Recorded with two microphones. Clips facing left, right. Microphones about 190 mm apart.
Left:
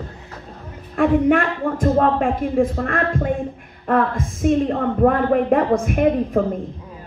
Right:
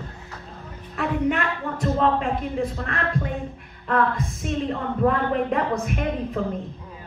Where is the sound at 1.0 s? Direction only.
50° left (ahead or behind).